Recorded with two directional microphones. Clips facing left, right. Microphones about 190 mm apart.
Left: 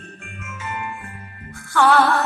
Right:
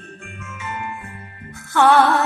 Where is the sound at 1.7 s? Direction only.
20° right (ahead or behind).